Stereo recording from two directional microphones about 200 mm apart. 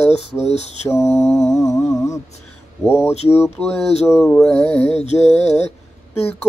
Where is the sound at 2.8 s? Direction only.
10° left (ahead or behind).